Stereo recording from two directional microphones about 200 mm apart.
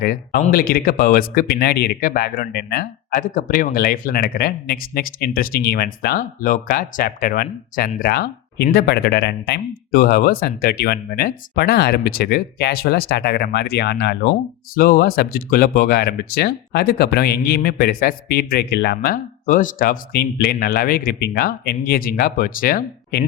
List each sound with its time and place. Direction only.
0.0 s speech: 55° left (ahead or behind)
14.8 s speech: 45° left (ahead or behind)